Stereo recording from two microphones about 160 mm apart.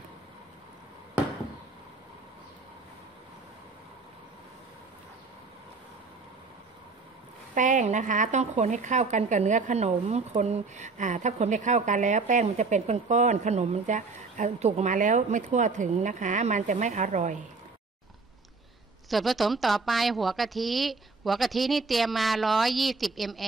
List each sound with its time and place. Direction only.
7.5 s a woman's voice: 50° right (ahead or behind)
19.0 s a woman's voice: centre (ahead or behind)